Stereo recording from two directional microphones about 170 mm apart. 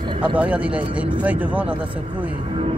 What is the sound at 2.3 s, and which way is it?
Speech, 35° right (ahead or behind).